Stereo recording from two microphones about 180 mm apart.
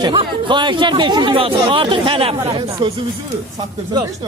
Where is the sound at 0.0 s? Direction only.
25° right (ahead or behind).